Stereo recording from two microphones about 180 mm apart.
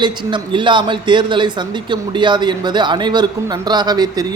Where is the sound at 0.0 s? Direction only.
25° right (ahead or behind).